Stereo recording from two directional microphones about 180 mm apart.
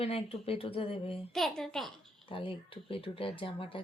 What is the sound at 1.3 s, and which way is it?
Child singing, centre (ahead or behind).